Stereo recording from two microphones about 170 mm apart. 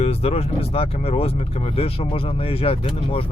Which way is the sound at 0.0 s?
35° left (ahead or behind).